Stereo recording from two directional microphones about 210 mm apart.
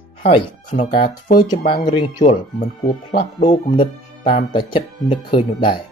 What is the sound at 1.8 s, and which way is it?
Speech, 20° left (ahead or behind).